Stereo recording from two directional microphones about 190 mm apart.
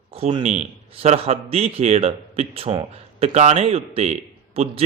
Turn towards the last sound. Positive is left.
turn(degrees=-35)  # may be behind; listen again after turning